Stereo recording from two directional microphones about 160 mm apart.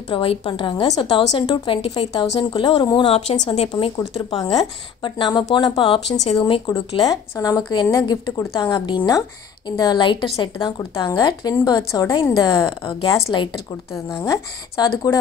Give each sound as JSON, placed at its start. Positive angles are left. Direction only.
{"t": 0.1, "sound": "a woman's voice", "side_deg": 35}
{"t": 4.3, "sound": "a woman's voice", "side_deg": 25}